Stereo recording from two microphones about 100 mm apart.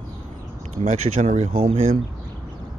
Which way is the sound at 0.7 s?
90° right.